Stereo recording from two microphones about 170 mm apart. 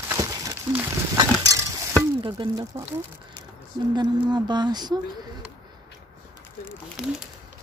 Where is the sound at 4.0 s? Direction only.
25° right (ahead or behind).